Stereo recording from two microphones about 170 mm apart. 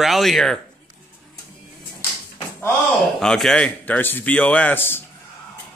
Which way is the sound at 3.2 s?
5° left (ahead or behind).